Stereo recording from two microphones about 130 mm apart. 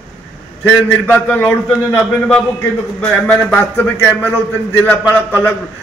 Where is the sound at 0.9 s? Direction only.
10° left (ahead or behind).